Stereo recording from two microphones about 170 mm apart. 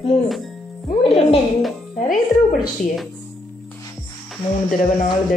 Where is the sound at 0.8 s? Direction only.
35° left (ahead or behind).